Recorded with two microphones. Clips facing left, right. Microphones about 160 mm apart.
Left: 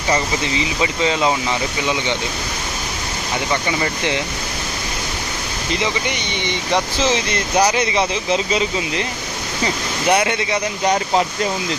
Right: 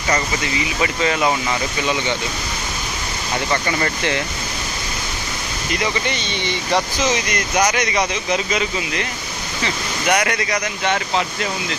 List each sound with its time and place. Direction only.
0.8 s speech: 20° left (ahead or behind)
3.5 s speech: 10° left (ahead or behind)
5.8 s speech: 15° left (ahead or behind)
10.1 s speech: 25° left (ahead or behind)
10.8 s speech: 35° left (ahead or behind)